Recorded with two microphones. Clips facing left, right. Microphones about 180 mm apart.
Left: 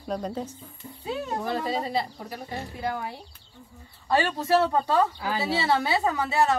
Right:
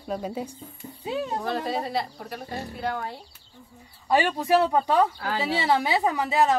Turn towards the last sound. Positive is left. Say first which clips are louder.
# right 1 dB
turn(degrees=-15)  # may be behind; listen again after turning